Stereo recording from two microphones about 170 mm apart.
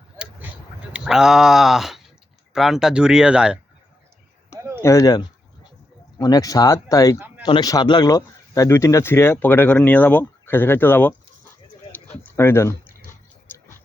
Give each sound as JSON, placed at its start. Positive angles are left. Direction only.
{"t": 0.9, "sound": "speech", "side_deg": -5}
{"t": 4.8, "sound": "speech", "side_deg": 20}
{"t": 12.1, "sound": "speech", "side_deg": 10}